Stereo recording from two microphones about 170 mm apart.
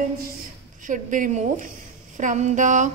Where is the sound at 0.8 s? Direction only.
50° right (ahead or behind).